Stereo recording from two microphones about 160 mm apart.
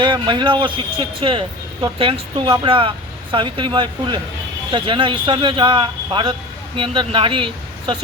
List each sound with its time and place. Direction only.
0.0 s speech: 30° right (ahead or behind)